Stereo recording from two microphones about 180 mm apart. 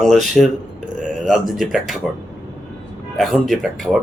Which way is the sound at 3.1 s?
Centre (ahead or behind).